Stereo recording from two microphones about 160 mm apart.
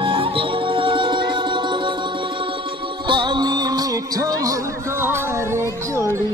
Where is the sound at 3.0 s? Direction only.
30° right (ahead or behind).